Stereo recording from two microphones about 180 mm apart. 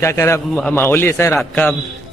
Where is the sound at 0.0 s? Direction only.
15° left (ahead or behind).